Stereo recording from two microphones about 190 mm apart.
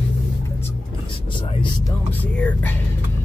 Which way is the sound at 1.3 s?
25° left (ahead or behind).